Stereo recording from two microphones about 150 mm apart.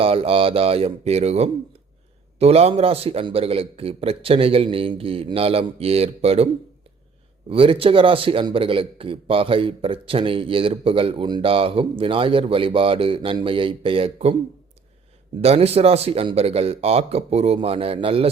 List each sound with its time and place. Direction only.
0.0 s a man's voice: 40° right (ahead or behind)
7.5 s a man's voice: 35° right (ahead or behind)
15.4 s a man's voice: 45° right (ahead or behind)